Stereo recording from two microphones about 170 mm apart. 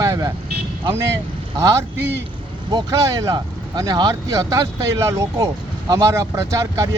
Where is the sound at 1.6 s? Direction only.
20° right (ahead or behind).